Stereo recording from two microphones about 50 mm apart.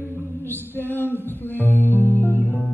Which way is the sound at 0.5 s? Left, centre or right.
Left.